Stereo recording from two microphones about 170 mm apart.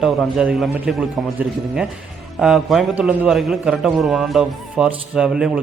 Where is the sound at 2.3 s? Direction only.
Centre (ahead or behind).